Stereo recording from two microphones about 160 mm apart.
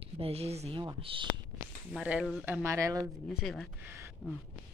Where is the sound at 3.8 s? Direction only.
15° right (ahead or behind).